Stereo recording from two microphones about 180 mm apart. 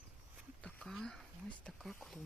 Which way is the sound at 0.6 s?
5° left (ahead or behind).